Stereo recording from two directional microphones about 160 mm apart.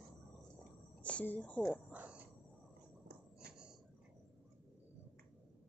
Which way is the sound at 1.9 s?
10° right (ahead or behind).